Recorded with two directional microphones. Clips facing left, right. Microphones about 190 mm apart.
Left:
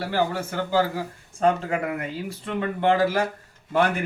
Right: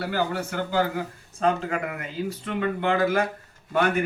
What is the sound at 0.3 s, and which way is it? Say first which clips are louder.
Speech: left 2 dB; 30° left (ahead or behind).